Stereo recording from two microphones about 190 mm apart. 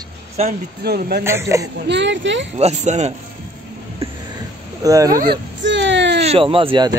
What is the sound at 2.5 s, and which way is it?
Speech, 35° right (ahead or behind).